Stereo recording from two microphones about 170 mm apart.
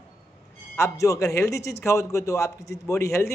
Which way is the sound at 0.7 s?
15° left (ahead or behind).